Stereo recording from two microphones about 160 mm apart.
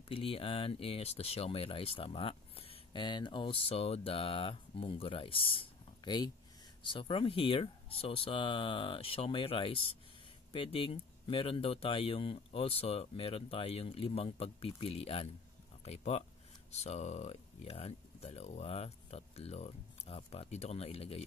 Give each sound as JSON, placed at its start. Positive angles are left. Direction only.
{"t": 0.1, "sound": "speech", "side_deg": 35}